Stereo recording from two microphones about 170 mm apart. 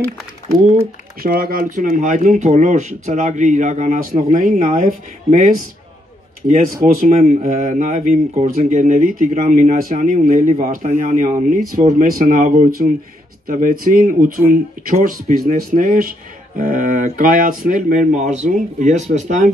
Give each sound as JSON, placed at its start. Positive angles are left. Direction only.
{"t": 0.5, "sound": "speech", "side_deg": -40}
{"t": 1.2, "sound": "speech", "side_deg": -60}
{"t": 7.1, "sound": "speech", "side_deg": -40}